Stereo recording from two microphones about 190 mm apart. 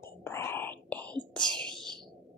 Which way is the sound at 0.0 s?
15° left (ahead or behind).